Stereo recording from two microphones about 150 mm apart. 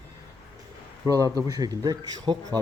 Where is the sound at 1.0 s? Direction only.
25° right (ahead or behind).